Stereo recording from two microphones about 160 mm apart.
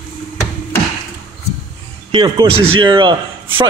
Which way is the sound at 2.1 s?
25° right (ahead or behind).